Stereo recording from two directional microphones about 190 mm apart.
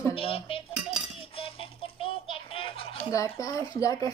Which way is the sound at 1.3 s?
30° left (ahead or behind).